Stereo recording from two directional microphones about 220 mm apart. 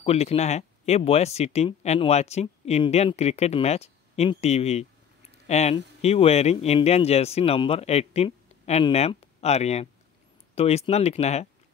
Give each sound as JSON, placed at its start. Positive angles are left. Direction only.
{"t": 0.0, "sound": "speech", "side_deg": 25}